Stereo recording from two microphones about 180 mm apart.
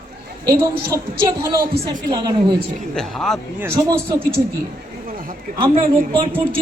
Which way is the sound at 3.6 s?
15° right (ahead or behind).